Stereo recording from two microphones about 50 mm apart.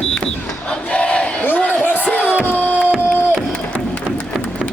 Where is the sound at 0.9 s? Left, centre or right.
Left.